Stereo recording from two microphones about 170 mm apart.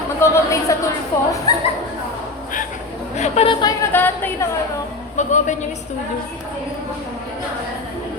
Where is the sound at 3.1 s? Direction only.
40° left (ahead or behind).